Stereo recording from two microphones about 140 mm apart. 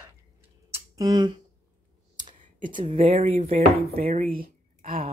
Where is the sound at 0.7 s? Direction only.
25° right (ahead or behind).